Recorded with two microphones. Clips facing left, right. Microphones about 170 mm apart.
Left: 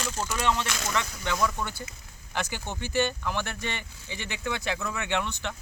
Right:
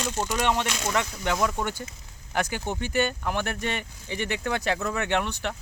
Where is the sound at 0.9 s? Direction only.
40° right (ahead or behind).